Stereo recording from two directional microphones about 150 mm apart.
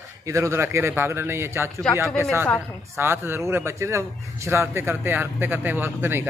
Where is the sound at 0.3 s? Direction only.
20° right (ahead or behind).